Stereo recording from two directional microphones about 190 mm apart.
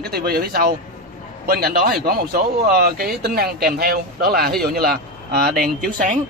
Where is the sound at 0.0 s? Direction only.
55° right (ahead or behind).